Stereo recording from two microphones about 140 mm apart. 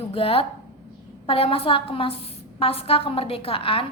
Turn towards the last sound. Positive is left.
turn(degrees=40)  # may be behind; listen again after turning